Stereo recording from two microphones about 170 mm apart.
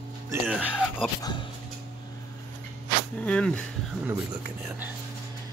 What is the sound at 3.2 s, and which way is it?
Speech, 5° left (ahead or behind).